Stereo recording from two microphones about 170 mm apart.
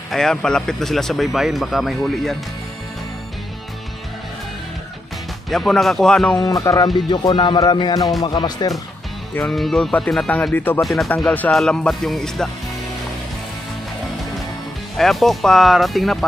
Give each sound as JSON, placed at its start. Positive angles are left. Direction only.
{"t": 0.1, "sound": "speech", "side_deg": 5}
{"t": 5.5, "sound": "speech", "side_deg": 0}
{"t": 6.3, "sound": "music", "side_deg": 20}
{"t": 9.3, "sound": "speech", "side_deg": 5}
{"t": 10.8, "sound": "speech", "side_deg": 0}
{"t": 15.0, "sound": "speech", "side_deg": 0}